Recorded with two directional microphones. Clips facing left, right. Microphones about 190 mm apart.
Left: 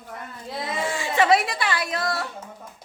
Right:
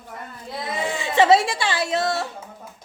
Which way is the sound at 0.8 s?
20° right (ahead or behind).